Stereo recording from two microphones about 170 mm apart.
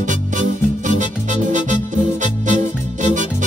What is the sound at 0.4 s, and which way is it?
Music, 45° right (ahead or behind).